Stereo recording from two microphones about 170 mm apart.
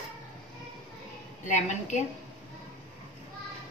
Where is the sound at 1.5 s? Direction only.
45° left (ahead or behind).